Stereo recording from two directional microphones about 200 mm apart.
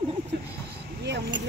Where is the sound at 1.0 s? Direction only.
60° right (ahead or behind).